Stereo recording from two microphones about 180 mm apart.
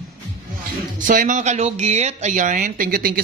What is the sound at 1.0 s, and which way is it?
Speech, 50° right (ahead or behind).